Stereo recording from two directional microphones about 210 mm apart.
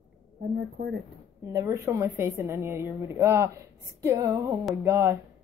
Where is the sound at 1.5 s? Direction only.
15° right (ahead or behind).